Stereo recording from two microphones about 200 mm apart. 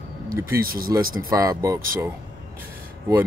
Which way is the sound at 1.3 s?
15° right (ahead or behind).